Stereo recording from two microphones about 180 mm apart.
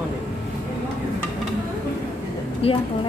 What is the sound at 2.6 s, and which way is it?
Speech, 30° left (ahead or behind).